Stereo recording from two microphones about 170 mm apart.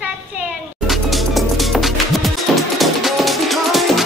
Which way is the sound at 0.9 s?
Centre (ahead or behind).